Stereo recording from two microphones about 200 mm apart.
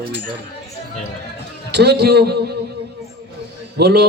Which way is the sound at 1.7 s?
55° right (ahead or behind).